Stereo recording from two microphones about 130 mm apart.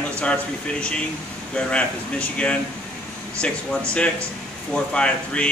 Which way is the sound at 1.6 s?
10° left (ahead or behind).